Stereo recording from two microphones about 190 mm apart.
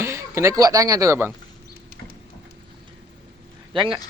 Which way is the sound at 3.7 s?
25° right (ahead or behind).